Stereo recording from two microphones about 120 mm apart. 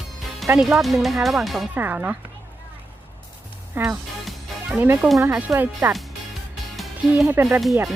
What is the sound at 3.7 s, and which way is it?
Speech, 15° right (ahead or behind).